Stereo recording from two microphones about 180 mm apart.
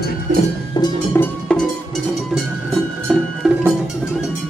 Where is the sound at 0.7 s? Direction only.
20° left (ahead or behind).